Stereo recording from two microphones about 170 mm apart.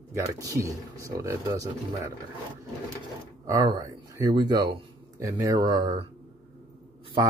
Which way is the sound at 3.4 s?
20° right (ahead or behind).